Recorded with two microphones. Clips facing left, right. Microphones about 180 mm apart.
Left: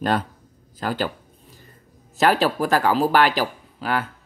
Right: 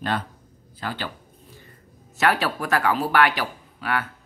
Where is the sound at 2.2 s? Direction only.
35° left (ahead or behind).